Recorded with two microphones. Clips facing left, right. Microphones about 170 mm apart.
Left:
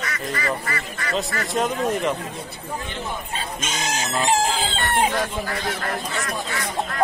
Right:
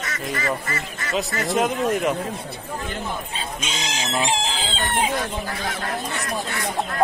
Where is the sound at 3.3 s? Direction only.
50° left (ahead or behind).